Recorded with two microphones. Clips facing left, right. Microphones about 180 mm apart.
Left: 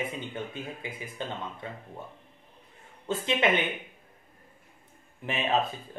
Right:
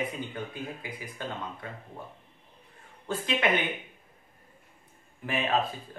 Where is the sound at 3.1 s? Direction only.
25° left (ahead or behind).